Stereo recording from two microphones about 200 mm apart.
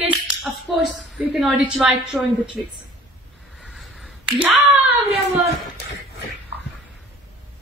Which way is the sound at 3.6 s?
Centre (ahead or behind).